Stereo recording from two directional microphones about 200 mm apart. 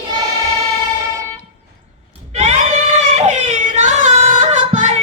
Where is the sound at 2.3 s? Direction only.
35° right (ahead or behind).